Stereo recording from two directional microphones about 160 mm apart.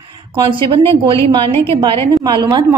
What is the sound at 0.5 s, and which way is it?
A woman's voice, 30° right (ahead or behind).